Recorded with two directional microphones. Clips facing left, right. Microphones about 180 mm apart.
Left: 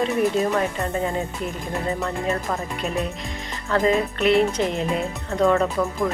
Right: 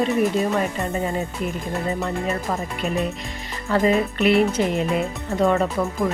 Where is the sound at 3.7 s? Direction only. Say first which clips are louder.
Right 1 dB; 5° right (ahead or behind).